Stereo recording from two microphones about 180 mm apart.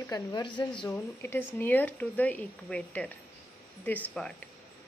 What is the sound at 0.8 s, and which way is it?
A woman's voice, 10° left (ahead or behind).